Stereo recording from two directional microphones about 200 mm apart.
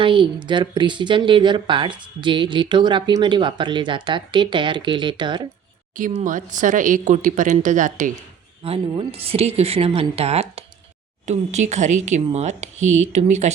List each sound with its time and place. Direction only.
0.0 s speech: 25° right (ahead or behind)
6.0 s speech: 40° right (ahead or behind)
8.6 s speech: 30° right (ahead or behind)